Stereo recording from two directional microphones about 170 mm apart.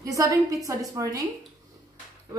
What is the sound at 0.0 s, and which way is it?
A woman's voice, 20° right (ahead or behind).